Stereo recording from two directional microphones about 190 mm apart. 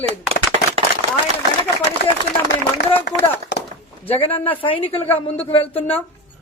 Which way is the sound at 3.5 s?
70° left (ahead or behind).